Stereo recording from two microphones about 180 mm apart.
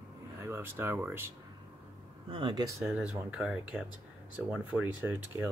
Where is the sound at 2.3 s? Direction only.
25° right (ahead or behind).